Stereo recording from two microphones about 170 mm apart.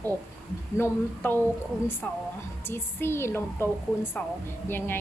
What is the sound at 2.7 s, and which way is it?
A woman's voice, 15° left (ahead or behind).